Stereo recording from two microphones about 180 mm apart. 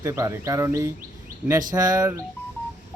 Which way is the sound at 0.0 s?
15° right (ahead or behind).